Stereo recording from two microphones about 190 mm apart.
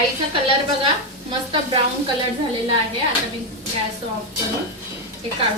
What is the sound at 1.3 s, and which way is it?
Speech, 25° right (ahead or behind).